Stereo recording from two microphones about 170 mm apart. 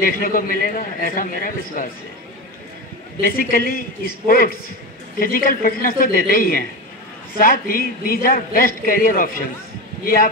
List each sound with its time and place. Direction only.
0.0 s a man's voice: 55° left (ahead or behind)
3.2 s a man's voice: 60° left (ahead or behind)